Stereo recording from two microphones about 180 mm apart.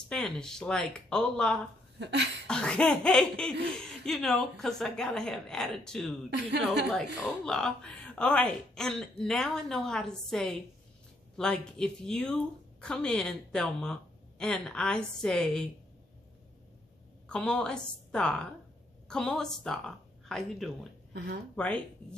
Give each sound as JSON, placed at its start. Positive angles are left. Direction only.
{"t": 0.1, "sound": "speech", "side_deg": 5}
{"t": 2.0, "sound": "cough", "side_deg": -70}
{"t": 2.4, "sound": "speech", "side_deg": 5}
{"t": 17.3, "sound": "speech", "side_deg": 5}